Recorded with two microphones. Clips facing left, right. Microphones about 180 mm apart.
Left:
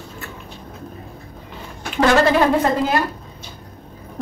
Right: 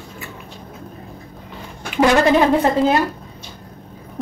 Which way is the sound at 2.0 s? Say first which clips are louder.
Right 1 dB; 15° right (ahead or behind).